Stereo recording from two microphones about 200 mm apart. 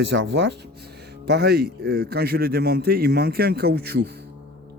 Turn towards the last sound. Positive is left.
turn(degrees=-55)  # may be behind; listen again after turning